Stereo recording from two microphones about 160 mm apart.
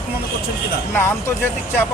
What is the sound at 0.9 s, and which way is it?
Speech, 15° left (ahead or behind).